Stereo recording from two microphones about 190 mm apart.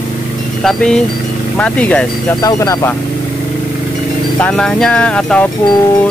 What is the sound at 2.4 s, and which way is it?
Speech, 20° left (ahead or behind).